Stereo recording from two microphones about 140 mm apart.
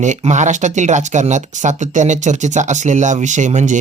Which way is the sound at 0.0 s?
55° right (ahead or behind).